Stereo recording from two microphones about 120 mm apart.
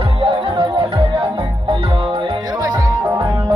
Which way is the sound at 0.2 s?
45° right (ahead or behind).